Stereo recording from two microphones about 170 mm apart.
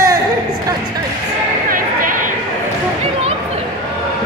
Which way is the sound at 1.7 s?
55° right (ahead or behind).